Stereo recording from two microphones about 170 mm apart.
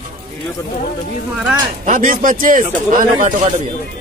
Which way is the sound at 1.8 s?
50° right (ahead or behind).